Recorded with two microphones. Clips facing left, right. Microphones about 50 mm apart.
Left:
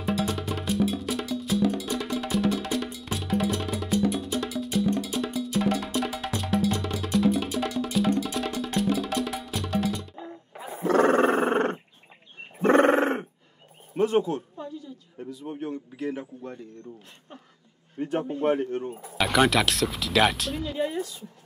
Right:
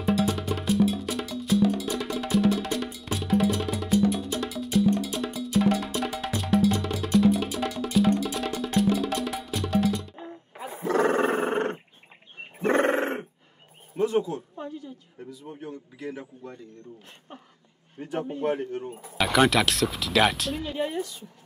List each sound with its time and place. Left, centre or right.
0.0 s music: centre
10.1 s music: centre
10.8 s roaring cats: left
11.4 s dog: left
12.6 s a sound: left
13.9 s a sound: left
14.6 s a sound: right
15.4 s speech: left
18.4 s speech: left
19.0 s speech: centre